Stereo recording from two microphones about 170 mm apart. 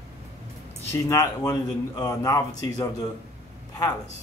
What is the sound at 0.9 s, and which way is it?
Speech, 20° left (ahead or behind).